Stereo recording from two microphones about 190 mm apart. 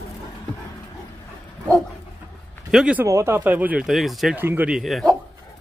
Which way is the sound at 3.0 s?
15° right (ahead or behind).